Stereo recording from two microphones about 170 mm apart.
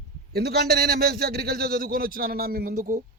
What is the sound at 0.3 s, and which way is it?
Speech, 65° right (ahead or behind).